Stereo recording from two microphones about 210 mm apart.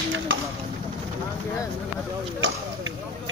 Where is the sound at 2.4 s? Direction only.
70° right (ahead or behind).